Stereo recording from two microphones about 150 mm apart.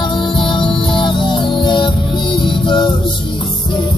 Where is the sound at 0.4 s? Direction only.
35° left (ahead or behind).